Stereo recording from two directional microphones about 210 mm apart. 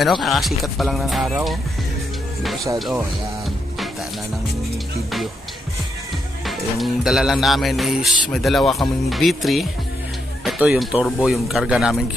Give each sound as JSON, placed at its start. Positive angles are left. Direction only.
{"t": 0.0, "sound": "music", "side_deg": 0}
{"t": 2.8, "sound": "music", "side_deg": 0}
{"t": 6.4, "sound": "music", "side_deg": 0}